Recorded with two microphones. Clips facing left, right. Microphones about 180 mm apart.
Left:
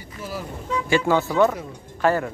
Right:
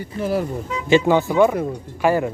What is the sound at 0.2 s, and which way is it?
Speech, 60° right (ahead or behind).